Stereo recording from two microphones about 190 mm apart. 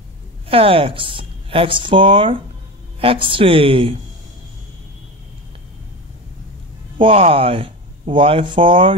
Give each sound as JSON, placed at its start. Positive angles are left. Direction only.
{"t": 0.5, "sound": "speech", "side_deg": -30}
{"t": 7.0, "sound": "speech", "side_deg": -30}